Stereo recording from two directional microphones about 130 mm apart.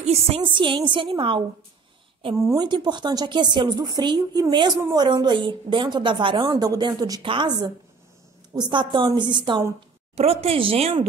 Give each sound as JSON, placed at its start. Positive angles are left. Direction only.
{"t": 0.0, "sound": "a woman's voice", "side_deg": -50}
{"t": 2.3, "sound": "a woman's voice", "side_deg": -25}
{"t": 10.1, "sound": "speech", "side_deg": -50}